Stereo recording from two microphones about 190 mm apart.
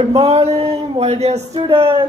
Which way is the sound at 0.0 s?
30° right (ahead or behind).